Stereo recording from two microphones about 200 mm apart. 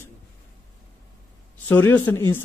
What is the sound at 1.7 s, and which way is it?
Speech, 10° left (ahead or behind).